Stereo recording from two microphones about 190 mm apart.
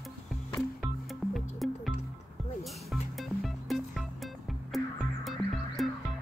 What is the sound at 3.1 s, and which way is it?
Music, centre (ahead or behind).